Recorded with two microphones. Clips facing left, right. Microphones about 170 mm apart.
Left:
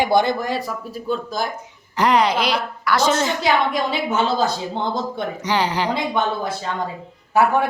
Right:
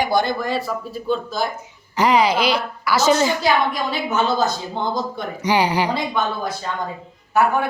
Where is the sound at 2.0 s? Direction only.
Centre (ahead or behind).